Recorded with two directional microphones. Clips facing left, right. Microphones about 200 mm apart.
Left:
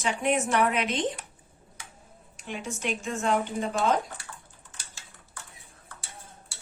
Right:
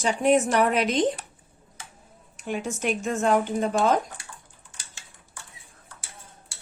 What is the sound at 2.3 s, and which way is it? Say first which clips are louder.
A woman's voice: right 6 dB; 45° right (ahead or behind).